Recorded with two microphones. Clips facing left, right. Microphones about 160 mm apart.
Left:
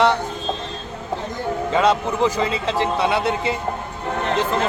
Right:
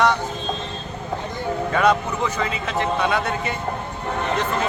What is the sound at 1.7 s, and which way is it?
Speech, 25° left (ahead or behind).